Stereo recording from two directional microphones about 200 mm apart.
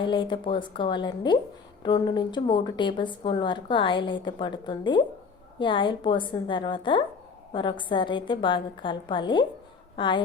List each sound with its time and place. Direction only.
0.0 s a woman's voice: 25° left (ahead or behind)